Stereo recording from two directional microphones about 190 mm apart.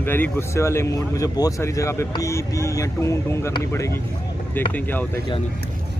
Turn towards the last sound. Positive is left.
turn(degrees=10)  # may be behind; listen again after turning